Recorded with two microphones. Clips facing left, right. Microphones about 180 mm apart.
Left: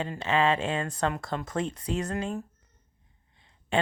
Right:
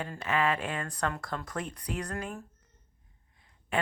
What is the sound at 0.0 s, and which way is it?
Speech, 25° left (ahead or behind).